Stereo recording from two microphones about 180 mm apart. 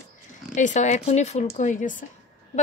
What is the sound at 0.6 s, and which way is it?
A woman's voice, 40° left (ahead or behind).